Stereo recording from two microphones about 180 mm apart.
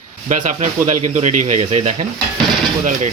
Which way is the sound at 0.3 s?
45° right (ahead or behind).